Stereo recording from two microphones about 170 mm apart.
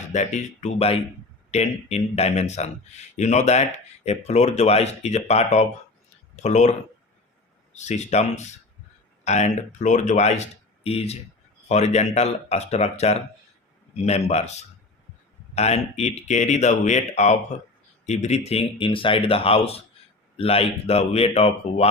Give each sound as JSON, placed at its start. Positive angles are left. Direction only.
{"t": 0.1, "sound": "speech", "side_deg": 45}
{"t": 15.5, "sound": "speech", "side_deg": 40}